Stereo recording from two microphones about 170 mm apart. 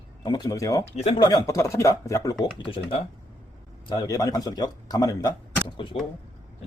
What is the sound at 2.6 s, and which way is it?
Speech, 30° left (ahead or behind).